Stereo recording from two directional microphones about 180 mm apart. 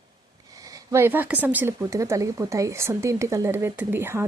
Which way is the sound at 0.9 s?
15° right (ahead or behind).